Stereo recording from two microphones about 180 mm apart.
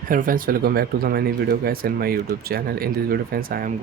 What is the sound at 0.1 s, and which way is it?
Speech, 50° right (ahead or behind).